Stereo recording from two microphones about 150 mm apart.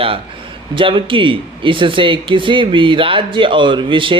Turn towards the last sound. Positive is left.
turn(degrees=-35)  # may be behind; listen again after turning